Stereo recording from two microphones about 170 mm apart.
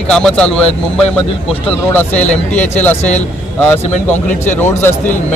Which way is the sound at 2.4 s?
10° left (ahead or behind).